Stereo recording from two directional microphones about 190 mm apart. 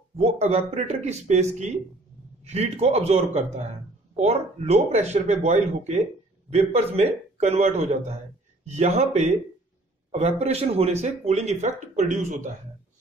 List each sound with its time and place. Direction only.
0.2 s speech: 35° right (ahead or behind)